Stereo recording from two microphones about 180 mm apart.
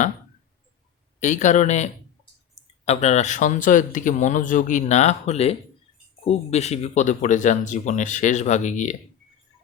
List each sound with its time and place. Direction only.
1.2 s speech: 40° left (ahead or behind)